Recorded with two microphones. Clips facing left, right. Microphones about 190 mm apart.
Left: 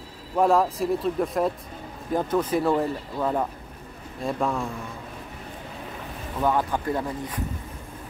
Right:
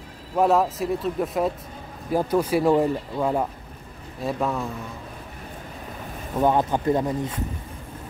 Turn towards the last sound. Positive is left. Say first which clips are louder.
# right 5 dB
turn(degrees=-20)  # may be behind; listen again after turning